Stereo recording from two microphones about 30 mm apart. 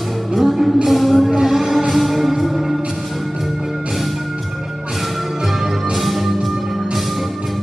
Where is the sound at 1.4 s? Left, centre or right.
Centre.